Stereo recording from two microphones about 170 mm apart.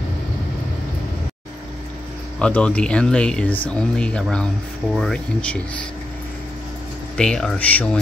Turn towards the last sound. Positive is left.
turn(degrees=10)  # may be behind; listen again after turning